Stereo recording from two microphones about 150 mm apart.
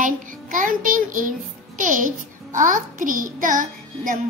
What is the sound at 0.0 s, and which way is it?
A child's voice, 60° right (ahead or behind).